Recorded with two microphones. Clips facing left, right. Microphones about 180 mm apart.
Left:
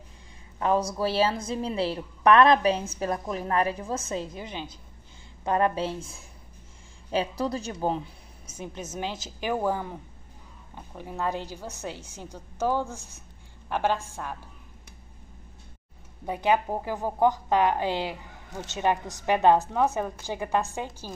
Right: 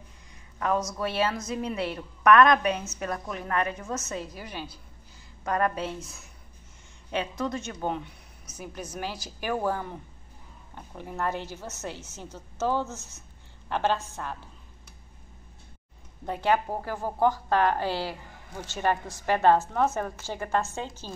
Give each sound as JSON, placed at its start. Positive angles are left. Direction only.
{"t": 0.6, "sound": "a woman's voice", "side_deg": 30}
{"t": 16.3, "sound": "a woman's voice", "side_deg": 15}